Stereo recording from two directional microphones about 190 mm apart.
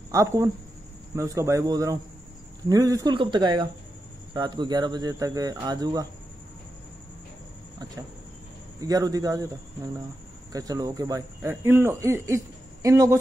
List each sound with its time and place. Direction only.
0.1 s speech: 15° right (ahead or behind)
8.8 s speech: 20° right (ahead or behind)